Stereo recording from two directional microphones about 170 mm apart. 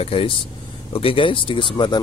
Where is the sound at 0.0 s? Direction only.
35° left (ahead or behind).